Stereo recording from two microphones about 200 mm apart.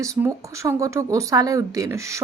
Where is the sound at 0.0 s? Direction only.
15° right (ahead or behind).